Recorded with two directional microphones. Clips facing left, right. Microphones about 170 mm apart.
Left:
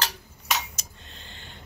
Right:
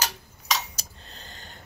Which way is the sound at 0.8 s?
40° right (ahead or behind).